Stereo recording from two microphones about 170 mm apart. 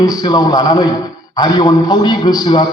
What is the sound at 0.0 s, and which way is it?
A man's voice, 20° left (ahead or behind).